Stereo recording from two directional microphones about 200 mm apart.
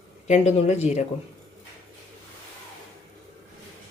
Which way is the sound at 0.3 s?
35° left (ahead or behind).